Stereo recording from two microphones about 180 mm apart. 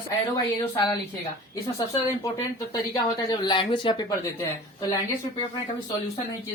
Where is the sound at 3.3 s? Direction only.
25° left (ahead or behind).